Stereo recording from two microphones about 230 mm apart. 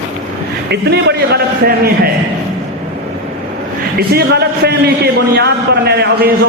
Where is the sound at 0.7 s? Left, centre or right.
Right.